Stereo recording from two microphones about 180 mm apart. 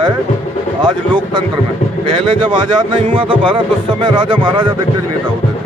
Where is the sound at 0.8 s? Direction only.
25° right (ahead or behind).